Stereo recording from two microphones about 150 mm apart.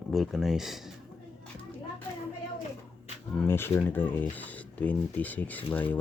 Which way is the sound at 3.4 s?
15° left (ahead or behind).